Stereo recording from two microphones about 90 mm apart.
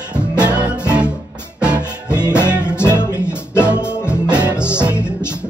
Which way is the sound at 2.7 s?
25° left (ahead or behind).